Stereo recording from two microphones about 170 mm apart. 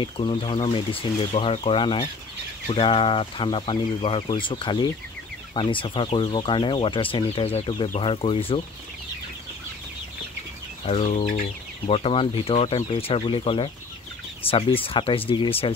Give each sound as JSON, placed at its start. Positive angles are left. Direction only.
{"t": 0.0, "sound": "speech", "side_deg": 30}
{"t": 10.9, "sound": "speech", "side_deg": 40}